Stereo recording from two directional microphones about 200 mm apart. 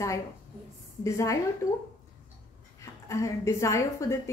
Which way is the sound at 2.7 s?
15° left (ahead or behind).